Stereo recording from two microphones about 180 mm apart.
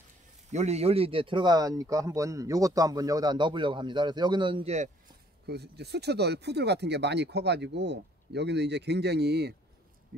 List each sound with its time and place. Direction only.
0.5 s speech: 40° right (ahead or behind)
5.5 s speech: 65° right (ahead or behind)